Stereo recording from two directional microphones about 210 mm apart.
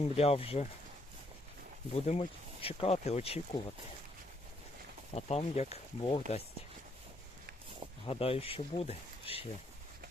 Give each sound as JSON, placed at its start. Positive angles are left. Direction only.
{"t": 0.2, "sound": "speech", "side_deg": 30}
{"t": 1.9, "sound": "speech", "side_deg": 30}
{"t": 5.1, "sound": "speech", "side_deg": 30}
{"t": 8.0, "sound": "speech", "side_deg": 25}